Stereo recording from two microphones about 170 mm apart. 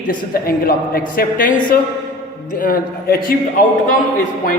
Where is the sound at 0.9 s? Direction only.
60° left (ahead or behind).